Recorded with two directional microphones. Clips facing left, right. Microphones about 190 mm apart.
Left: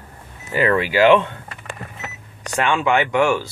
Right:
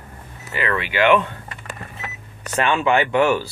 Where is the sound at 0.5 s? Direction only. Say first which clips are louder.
Left 5 dB; 40° left (ahead or behind).